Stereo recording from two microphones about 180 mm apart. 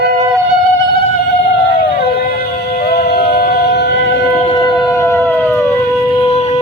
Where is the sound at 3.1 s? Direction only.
60° left (ahead or behind).